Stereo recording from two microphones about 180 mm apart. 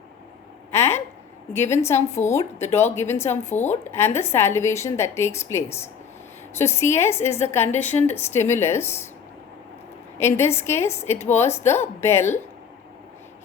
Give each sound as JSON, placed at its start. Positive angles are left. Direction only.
{"t": 0.7, "sound": "a sound", "side_deg": 15}
{"t": 1.5, "sound": "a woman's voice", "side_deg": 15}
{"t": 3.5, "sound": "speech", "side_deg": 40}
{"t": 3.9, "sound": "a woman's voice", "side_deg": 15}
{"t": 10.2, "sound": "a woman's voice", "side_deg": 15}